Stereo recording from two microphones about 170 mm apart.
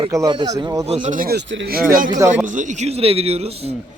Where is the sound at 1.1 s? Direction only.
60° right (ahead or behind).